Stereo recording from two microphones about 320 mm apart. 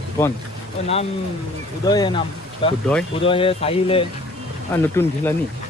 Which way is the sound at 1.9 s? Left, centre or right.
Centre.